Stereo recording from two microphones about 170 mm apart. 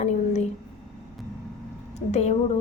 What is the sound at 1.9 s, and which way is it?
Speech, 40° left (ahead or behind).